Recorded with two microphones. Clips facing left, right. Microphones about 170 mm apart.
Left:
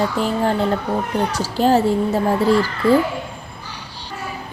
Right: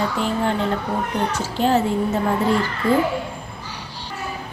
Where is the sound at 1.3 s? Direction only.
35° left (ahead or behind).